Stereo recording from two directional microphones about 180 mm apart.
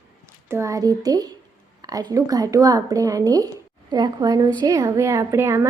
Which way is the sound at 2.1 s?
20° right (ahead or behind).